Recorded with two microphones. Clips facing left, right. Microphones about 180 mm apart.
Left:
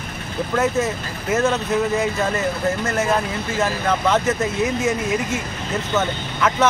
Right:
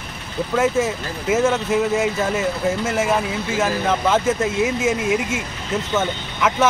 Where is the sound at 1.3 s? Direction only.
10° right (ahead or behind).